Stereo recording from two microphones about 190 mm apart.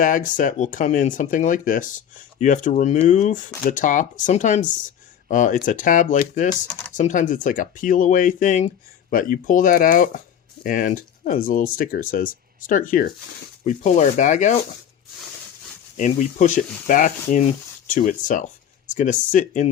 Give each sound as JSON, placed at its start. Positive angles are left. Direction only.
{"t": 0.0, "sound": "speech", "side_deg": 45}
{"t": 16.0, "sound": "speech", "side_deg": 40}